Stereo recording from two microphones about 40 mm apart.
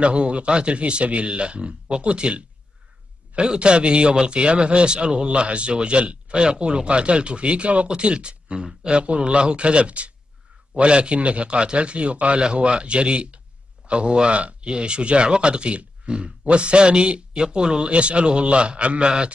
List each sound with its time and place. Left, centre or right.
0.0 s speech: right
3.5 s a man's voice: right